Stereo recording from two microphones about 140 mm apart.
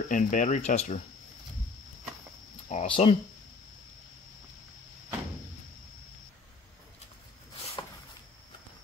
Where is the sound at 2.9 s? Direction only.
40° left (ahead or behind).